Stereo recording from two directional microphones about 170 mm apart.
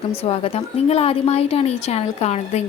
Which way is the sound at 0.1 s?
35° left (ahead or behind).